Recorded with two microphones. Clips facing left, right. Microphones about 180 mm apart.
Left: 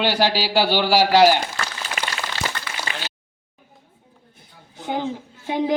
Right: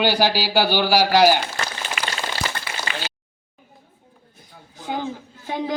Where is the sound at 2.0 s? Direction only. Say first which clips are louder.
Left 1 dB; 40° left (ahead or behind).